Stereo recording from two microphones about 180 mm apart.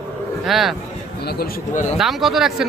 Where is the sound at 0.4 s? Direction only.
Centre (ahead or behind).